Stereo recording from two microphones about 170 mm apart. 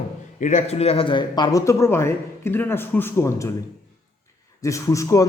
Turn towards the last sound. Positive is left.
turn(degrees=20)  # may be behind; listen again after turning